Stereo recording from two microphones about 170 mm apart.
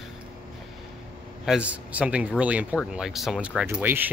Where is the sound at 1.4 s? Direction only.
5° right (ahead or behind).